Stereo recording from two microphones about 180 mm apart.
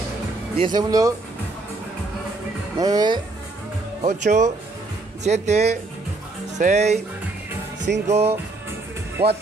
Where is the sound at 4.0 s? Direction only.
40° right (ahead or behind).